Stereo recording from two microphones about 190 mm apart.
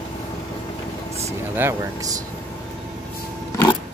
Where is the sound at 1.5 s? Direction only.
15° right (ahead or behind).